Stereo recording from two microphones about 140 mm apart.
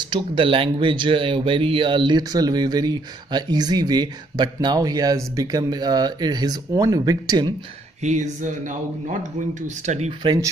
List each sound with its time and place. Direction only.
0.0 s speech: 35° right (ahead or behind)
8.0 s speech: 55° right (ahead or behind)
10.2 s speech: 30° right (ahead or behind)